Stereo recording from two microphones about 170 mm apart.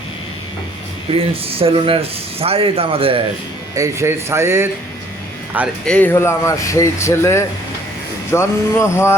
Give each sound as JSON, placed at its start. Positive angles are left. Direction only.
{"t": 1.1, "sound": "speech", "side_deg": -35}
{"t": 3.8, "sound": "speech", "side_deg": -15}
{"t": 5.8, "sound": "speech", "side_deg": 10}